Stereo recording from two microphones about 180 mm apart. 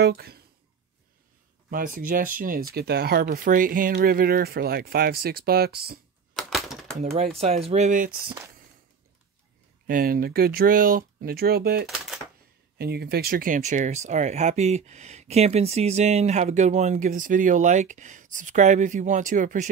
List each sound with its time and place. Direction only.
0.0 s speech: 60° right (ahead or behind)
1.7 s speech: 50° right (ahead or behind)
6.3 s typewriter: centre (ahead or behind)
7.0 s speech: 40° right (ahead or behind)
9.8 s speech: 50° right (ahead or behind)